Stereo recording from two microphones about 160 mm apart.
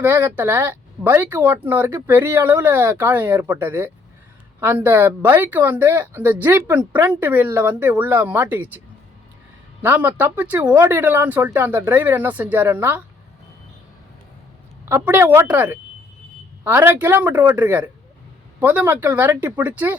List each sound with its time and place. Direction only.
0.0 s speech: 10° right (ahead or behind)
9.8 s speech: 10° right (ahead or behind)
14.8 s speech: 15° right (ahead or behind)